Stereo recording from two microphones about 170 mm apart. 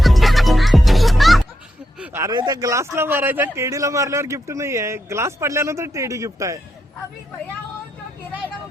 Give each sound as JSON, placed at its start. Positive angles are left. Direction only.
{"t": 0.0, "sound": "music", "side_deg": 0}
{"t": 2.0, "sound": "a sound", "side_deg": -15}
{"t": 2.3, "sound": "a man's voice", "side_deg": -25}